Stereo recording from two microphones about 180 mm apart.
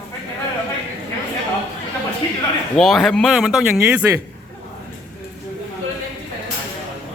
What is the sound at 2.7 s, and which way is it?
A man's voice, centre (ahead or behind).